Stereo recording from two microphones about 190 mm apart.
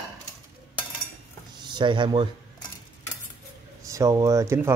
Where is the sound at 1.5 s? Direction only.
25° right (ahead or behind).